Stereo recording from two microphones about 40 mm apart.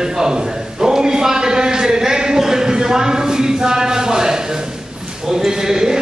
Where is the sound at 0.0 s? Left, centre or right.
Centre.